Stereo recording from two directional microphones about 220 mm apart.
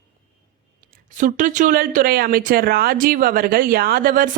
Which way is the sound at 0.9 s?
35° right (ahead or behind).